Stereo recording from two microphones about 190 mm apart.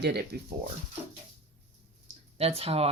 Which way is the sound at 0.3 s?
55° right (ahead or behind).